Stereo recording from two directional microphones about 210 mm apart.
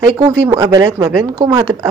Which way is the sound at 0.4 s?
15° right (ahead or behind).